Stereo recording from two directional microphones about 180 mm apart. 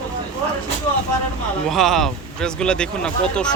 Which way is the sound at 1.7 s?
Centre (ahead or behind).